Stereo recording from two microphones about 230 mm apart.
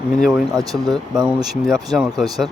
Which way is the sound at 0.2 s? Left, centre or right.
Centre.